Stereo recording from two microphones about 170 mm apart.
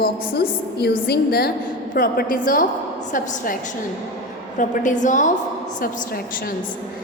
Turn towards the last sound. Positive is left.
turn(degrees=60)  # may be behind; listen again after turning